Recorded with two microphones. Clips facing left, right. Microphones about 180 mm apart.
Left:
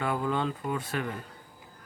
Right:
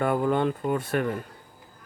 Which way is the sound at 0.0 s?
50° right (ahead or behind).